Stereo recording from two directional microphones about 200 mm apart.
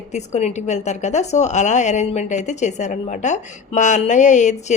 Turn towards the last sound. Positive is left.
turn(degrees=35)  # may be behind; listen again after turning